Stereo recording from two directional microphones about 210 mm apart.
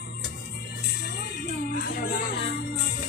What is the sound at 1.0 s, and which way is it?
Music, 45° left (ahead or behind).